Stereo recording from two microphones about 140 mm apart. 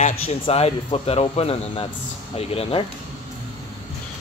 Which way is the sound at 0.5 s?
45° left (ahead or behind).